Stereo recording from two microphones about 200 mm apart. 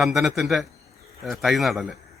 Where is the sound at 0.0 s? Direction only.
Centre (ahead or behind).